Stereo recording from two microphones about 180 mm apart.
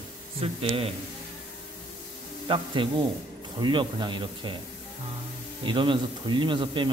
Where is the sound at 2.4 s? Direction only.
30° right (ahead or behind).